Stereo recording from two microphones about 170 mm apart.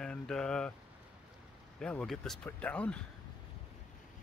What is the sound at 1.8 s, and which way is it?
Speech, 5° left (ahead or behind).